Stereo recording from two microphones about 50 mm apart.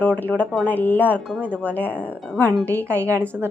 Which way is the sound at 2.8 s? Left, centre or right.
Right.